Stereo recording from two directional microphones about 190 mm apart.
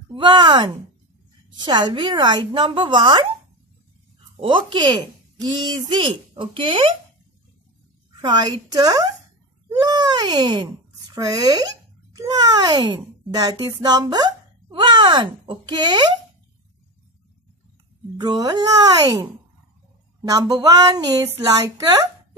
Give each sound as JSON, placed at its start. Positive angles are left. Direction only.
{"t": 0.1, "sound": "speech", "side_deg": -25}
{"t": 4.4, "sound": "speech", "side_deg": -25}
{"t": 8.2, "sound": "a child's voice", "side_deg": -20}
{"t": 18.2, "sound": "speech", "side_deg": -20}
{"t": 20.2, "sound": "a woman's voice", "side_deg": -20}